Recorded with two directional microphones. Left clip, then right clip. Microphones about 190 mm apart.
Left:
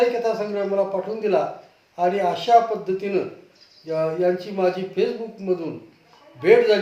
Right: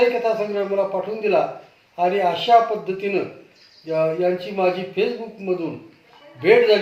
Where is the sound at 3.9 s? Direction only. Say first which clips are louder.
Right 2 dB; 15° left (ahead or behind).